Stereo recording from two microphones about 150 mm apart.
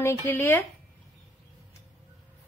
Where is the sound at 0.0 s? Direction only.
15° left (ahead or behind).